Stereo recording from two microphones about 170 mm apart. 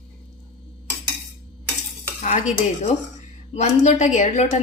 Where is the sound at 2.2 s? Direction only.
45° left (ahead or behind).